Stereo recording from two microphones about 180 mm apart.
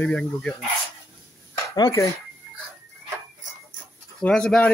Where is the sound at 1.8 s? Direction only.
20° left (ahead or behind).